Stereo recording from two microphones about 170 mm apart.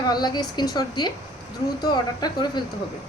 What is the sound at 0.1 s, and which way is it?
A woman's voice, 25° left (ahead or behind).